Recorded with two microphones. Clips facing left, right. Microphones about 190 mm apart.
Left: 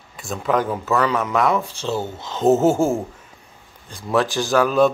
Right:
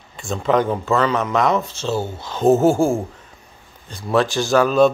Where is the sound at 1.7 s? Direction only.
15° left (ahead or behind).